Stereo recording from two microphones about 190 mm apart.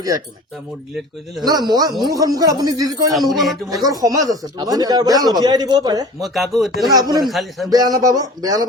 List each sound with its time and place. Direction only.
1.5 s speech: 20° right (ahead or behind)
3.1 s speech: centre (ahead or behind)
3.8 s speech: 20° right (ahead or behind)
6.2 s speech: centre (ahead or behind)
6.9 s speech: 20° right (ahead or behind)
7.3 s speech: centre (ahead or behind)
7.7 s speech: 20° right (ahead or behind)